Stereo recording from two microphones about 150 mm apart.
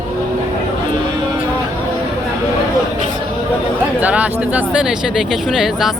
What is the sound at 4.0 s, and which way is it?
Speech, 10° right (ahead or behind).